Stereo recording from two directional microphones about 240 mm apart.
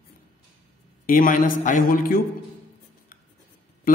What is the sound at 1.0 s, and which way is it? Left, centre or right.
A man's voice, left.